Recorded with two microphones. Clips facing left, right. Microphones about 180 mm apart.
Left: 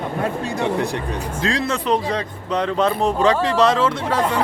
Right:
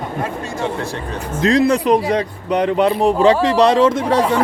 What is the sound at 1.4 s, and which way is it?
Speech, 30° left (ahead or behind).